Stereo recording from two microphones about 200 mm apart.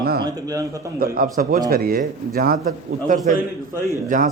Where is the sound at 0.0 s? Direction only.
50° right (ahead or behind).